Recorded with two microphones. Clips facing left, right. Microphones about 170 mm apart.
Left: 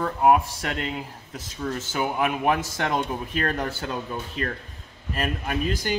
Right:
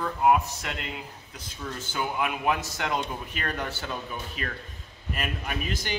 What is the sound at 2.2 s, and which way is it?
A man's voice, 45° left (ahead or behind).